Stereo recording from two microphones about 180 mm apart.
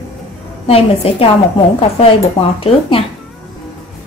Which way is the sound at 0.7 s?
30° left (ahead or behind).